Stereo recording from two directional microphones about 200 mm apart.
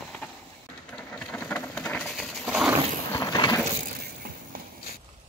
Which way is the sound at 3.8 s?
45° right (ahead or behind).